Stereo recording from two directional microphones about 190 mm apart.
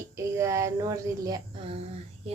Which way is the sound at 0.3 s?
15° right (ahead or behind).